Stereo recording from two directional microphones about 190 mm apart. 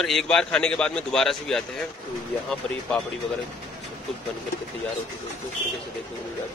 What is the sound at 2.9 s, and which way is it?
Speech, 5° left (ahead or behind).